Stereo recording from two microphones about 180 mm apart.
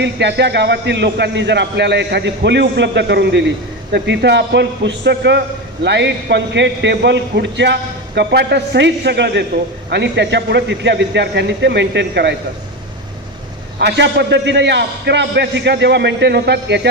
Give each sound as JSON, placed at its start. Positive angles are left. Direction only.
{"t": 0.0, "sound": "a man's voice", "side_deg": -70}
{"t": 13.7, "sound": "a man's voice", "side_deg": -70}